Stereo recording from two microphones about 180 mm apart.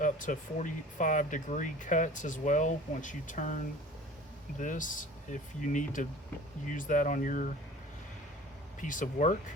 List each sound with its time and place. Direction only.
0.0 s speech: 45° left (ahead or behind)
8.8 s speech: 45° left (ahead or behind)